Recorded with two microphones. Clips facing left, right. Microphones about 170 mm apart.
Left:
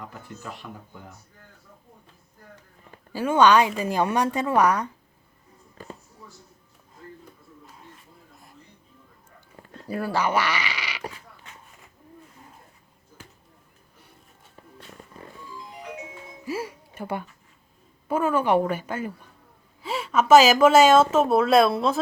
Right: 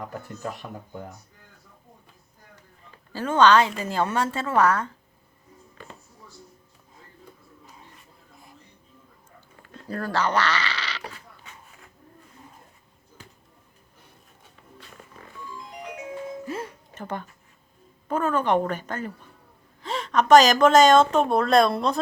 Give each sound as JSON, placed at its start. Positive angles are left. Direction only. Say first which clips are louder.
{"t": 0.0, "sound": "speech", "louder": "right 5 dB", "side_deg": -45}
{"t": 3.1, "sound": "a woman's voice", "louder": "even", "side_deg": 10}
{"t": 5.8, "sound": "music", "louder": "left 4 dB", "side_deg": 40}
{"t": 9.9, "sound": "speech", "louder": "left 1 dB", "side_deg": 10}
{"t": 16.5, "sound": "a sound", "louder": "left 2 dB", "side_deg": 10}
{"t": 18.1, "sound": "a woman's voice", "louder": "left 1 dB", "side_deg": 10}